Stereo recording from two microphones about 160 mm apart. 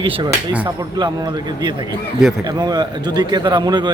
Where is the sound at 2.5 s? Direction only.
25° right (ahead or behind).